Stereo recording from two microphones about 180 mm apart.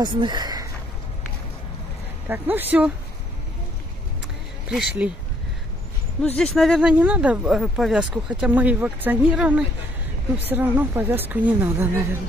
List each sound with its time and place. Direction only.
0.0 s speech: 25° right (ahead or behind)
2.2 s a woman's voice: 10° right (ahead or behind)
5.0 s a woman's voice: 5° right (ahead or behind)
6.2 s a woman's voice: 5° left (ahead or behind); by 12.2 s 10° right (ahead or behind)